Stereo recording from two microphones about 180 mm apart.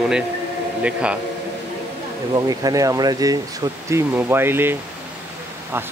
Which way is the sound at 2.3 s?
20° right (ahead or behind).